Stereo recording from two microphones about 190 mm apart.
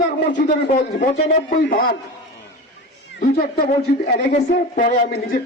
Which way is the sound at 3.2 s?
50° left (ahead or behind).